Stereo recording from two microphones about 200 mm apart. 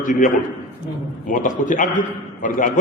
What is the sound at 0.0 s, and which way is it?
Speech, 40° left (ahead or behind).